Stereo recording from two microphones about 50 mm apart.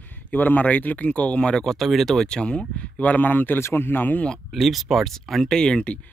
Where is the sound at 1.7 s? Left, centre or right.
Centre.